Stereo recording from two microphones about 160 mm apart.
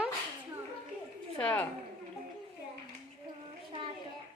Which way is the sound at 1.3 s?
10° left (ahead or behind).